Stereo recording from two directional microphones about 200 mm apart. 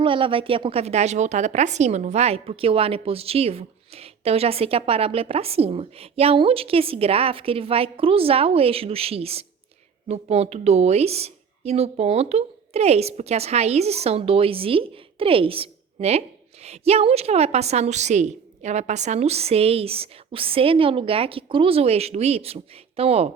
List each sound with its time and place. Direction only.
0.0 s a woman's voice: 25° right (ahead or behind)